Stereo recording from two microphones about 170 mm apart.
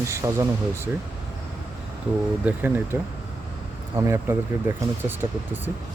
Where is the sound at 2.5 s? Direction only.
10° right (ahead or behind).